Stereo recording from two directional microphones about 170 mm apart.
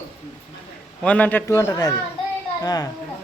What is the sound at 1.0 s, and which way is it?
A man's voice, 10° left (ahead or behind).